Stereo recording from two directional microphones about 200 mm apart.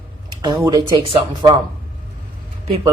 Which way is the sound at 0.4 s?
20° right (ahead or behind).